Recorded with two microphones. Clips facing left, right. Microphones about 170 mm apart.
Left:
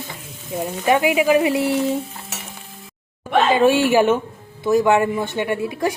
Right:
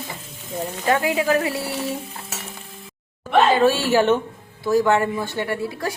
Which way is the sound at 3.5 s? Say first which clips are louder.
Left 3 dB; 15° left (ahead or behind).